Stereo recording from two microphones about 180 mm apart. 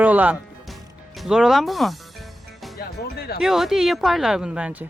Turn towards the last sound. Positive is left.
turn(degrees=-5)  # may be behind; listen again after turning